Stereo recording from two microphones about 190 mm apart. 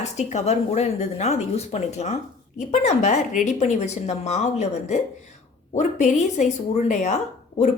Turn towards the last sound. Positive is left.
turn(degrees=35)  # may be behind; listen again after turning